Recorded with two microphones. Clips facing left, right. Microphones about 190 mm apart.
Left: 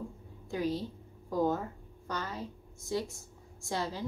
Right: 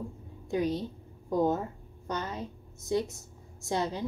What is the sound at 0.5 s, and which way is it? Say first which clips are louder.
A woman's voice: right 3 dB; 20° right (ahead or behind).